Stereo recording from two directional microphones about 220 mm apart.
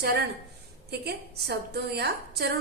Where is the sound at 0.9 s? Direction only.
45° right (ahead or behind).